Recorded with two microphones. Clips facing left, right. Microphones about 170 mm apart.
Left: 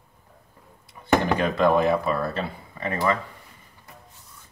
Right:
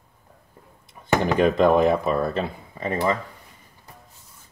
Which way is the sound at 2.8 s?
20° right (ahead or behind).